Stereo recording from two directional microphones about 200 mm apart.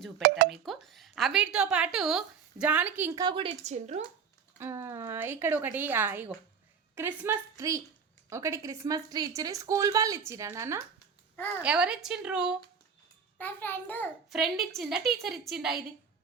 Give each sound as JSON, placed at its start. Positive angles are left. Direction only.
{"t": 0.4, "sound": "a woman's voice", "side_deg": 0}
{"t": 4.5, "sound": "a woman's voice", "side_deg": -10}
{"t": 11.3, "sound": "speech", "side_deg": 10}
{"t": 11.6, "sound": "a woman's voice", "side_deg": -5}
{"t": 13.4, "sound": "a child's voice", "side_deg": 10}